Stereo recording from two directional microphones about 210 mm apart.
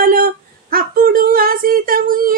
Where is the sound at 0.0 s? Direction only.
45° right (ahead or behind).